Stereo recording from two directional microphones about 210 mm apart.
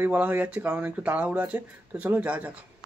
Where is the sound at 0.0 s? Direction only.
10° right (ahead or behind).